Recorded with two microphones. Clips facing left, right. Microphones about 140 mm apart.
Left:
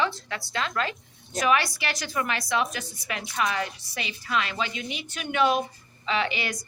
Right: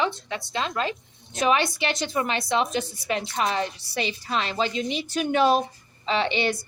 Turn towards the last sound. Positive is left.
turn(degrees=-30)  # may be behind; listen again after turning